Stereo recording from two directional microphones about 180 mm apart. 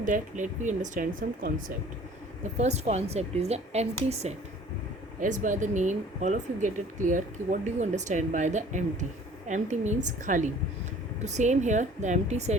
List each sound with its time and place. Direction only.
0.0 s speech: 45° right (ahead or behind)
2.6 s a woman's voice: 35° right (ahead or behind)